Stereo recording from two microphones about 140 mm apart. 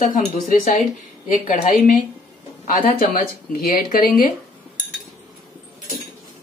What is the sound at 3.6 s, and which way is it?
Speech, 90° left.